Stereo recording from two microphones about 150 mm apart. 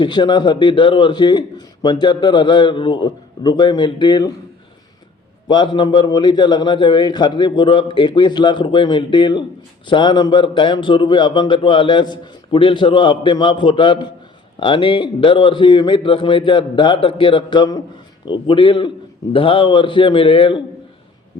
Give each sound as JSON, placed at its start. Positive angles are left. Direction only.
{"t": 0.0, "sound": "a man's voice", "side_deg": 30}
{"t": 5.5, "sound": "a man's voice", "side_deg": 30}